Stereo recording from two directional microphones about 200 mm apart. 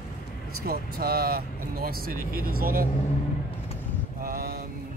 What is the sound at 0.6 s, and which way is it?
Speech, 50° right (ahead or behind).